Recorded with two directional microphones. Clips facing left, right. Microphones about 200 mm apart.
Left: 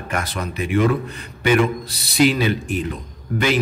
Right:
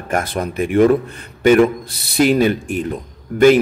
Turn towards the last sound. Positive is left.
turn(degrees=-45)  # may be behind; listen again after turning